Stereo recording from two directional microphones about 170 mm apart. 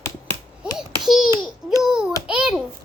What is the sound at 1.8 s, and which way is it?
Babbling, 5° right (ahead or behind).